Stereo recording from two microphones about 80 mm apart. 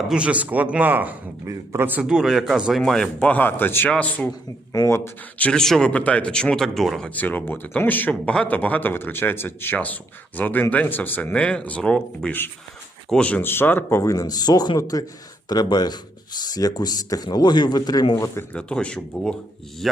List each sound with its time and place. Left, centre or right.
0.1 s speech: centre
1.5 s a man's voice: right
2.0 s speech: centre
2.8 s speech: centre
3.2 s a man's voice: centre
3.8 s speech: centre
4.3 s speech: left
4.9 s speech: left
5.4 s speech: centre
5.9 s speech: centre
7.1 s a man's voice: left
13.4 s a man's voice: left
14.0 s speech: left
18.5 s speech: centre